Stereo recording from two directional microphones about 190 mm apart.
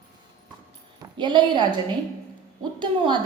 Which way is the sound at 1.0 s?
25° right (ahead or behind).